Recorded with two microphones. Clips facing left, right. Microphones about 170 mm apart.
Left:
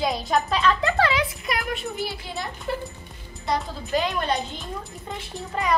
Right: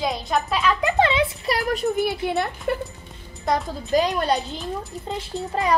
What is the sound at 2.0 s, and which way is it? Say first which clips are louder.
Speech: right 9 dB; 60° right (ahead or behind).